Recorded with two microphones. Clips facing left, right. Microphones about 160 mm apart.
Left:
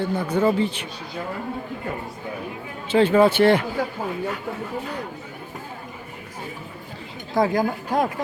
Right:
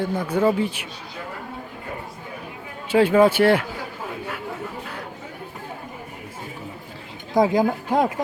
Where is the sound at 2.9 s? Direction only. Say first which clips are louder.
Right 1 dB; 10° right (ahead or behind).